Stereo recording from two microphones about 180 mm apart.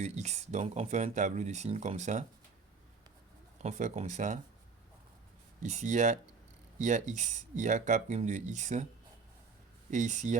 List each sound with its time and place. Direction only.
0.0 s speech: 40° right (ahead or behind)
3.6 s speech: 40° right (ahead or behind)
5.6 s speech: 40° right (ahead or behind)
9.9 s speech: 40° right (ahead or behind)